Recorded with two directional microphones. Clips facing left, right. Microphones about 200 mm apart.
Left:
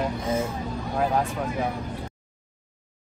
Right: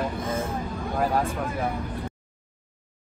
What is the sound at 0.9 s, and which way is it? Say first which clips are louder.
Speech: even; centre (ahead or behind).